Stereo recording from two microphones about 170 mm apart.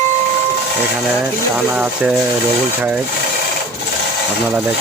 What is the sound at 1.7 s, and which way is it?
Speech, 5° right (ahead or behind).